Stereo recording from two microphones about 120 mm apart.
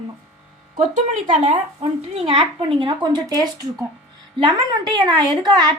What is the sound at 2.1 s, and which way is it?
Speech, 45° right (ahead or behind).